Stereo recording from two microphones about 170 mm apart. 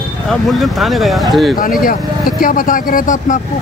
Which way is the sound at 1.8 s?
55° left (ahead or behind).